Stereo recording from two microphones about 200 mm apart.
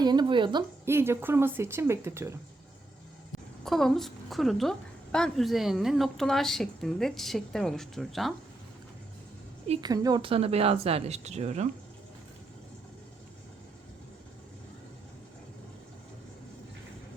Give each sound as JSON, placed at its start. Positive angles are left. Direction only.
{"t": 0.0, "sound": "speech", "side_deg": -20}
{"t": 0.9, "sound": "speech", "side_deg": -10}
{"t": 3.6, "sound": "a woman's voice", "side_deg": 0}
{"t": 9.8, "sound": "speech", "side_deg": -20}